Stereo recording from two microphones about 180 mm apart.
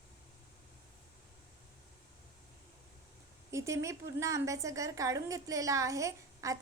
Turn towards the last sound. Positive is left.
turn(degrees=-20)  # may be behind; listen again after turning